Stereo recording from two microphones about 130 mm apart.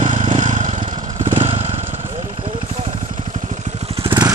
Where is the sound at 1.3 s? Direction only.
55° right (ahead or behind).